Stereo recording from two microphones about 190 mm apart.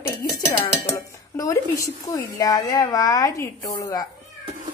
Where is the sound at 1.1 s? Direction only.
15° left (ahead or behind).